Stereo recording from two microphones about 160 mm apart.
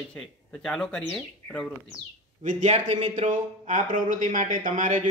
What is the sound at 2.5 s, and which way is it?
Speech, 50° right (ahead or behind).